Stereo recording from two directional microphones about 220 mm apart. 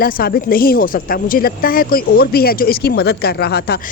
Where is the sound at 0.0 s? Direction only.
45° left (ahead or behind).